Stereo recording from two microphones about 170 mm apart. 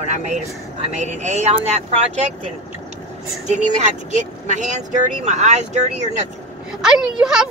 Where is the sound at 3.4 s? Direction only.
45° right (ahead or behind).